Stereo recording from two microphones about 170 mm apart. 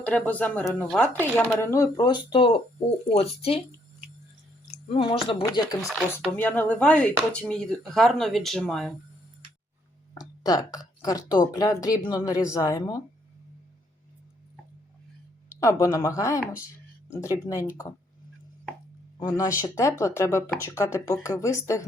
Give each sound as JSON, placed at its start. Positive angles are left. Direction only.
{"t": 0.0, "sound": "speech", "side_deg": 10}
{"t": 4.9, "sound": "speech", "side_deg": 35}
{"t": 10.2, "sound": "speech", "side_deg": 20}
{"t": 15.4, "sound": "speech", "side_deg": 20}
{"t": 19.6, "sound": "speech", "side_deg": 15}